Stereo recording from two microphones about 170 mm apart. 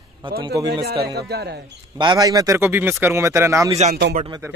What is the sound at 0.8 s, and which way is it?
Speech, 70° right (ahead or behind).